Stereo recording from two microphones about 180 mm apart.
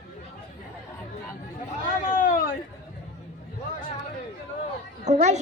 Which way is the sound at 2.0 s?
50° left (ahead or behind).